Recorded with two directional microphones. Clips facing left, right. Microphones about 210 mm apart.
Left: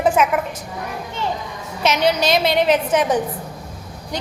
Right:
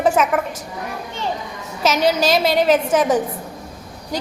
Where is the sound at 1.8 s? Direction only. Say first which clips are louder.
Right 1 dB; 45° right (ahead or behind).